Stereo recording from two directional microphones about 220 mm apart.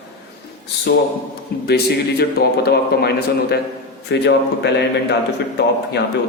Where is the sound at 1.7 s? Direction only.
45° left (ahead or behind).